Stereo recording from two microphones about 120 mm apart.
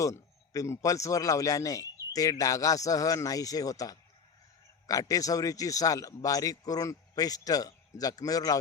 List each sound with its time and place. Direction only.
0.0 s a man's voice: 25° left (ahead or behind)